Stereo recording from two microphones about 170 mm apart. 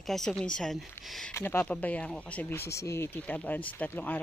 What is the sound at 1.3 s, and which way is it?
Speech, 15° left (ahead or behind).